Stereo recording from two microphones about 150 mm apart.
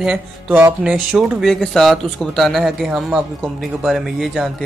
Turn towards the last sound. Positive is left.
turn(degrees=0)  # may be behind; listen again after turning